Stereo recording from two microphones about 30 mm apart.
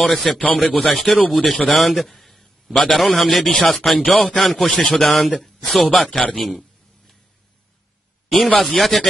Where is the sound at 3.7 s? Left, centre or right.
Centre.